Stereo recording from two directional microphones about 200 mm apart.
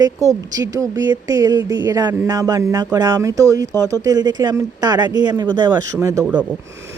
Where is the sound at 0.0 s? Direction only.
15° right (ahead or behind).